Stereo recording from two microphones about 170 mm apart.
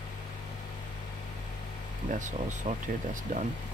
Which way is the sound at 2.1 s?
45° right (ahead or behind).